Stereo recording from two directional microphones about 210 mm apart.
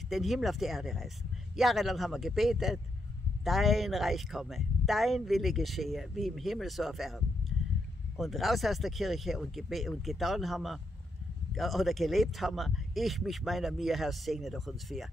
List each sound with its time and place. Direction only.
0.1 s speech: centre (ahead or behind)
8.2 s speech: centre (ahead or behind)